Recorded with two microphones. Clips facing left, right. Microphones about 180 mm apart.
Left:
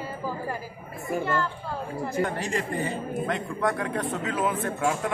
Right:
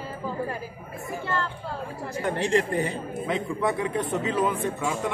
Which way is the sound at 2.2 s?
55° left (ahead or behind).